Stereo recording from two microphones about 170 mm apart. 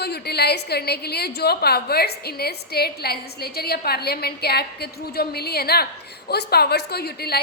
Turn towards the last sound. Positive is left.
turn(degrees=70)  # may be behind; listen again after turning